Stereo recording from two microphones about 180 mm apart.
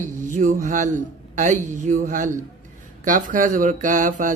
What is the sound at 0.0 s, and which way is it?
Speech, 45° right (ahead or behind).